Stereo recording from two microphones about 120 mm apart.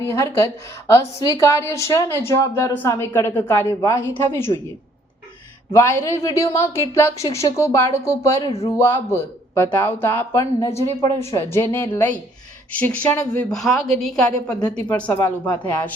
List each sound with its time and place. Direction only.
0.0 s a woman's voice: 20° left (ahead or behind)
5.7 s a woman's voice: 25° left (ahead or behind)